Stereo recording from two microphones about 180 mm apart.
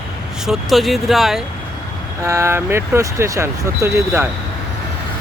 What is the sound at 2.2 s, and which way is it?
Speech, 15° right (ahead or behind).